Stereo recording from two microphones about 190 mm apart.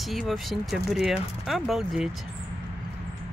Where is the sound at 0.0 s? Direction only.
Centre (ahead or behind).